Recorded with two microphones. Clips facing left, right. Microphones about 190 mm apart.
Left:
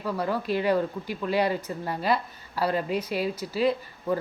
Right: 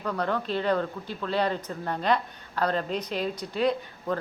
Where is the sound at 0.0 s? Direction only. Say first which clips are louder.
Even; 10° left (ahead or behind).